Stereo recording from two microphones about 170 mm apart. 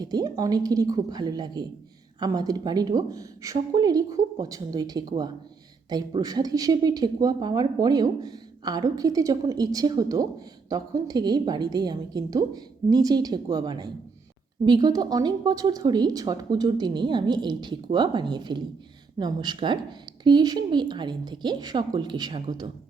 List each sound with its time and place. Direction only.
0.0 s speech: 20° right (ahead or behind)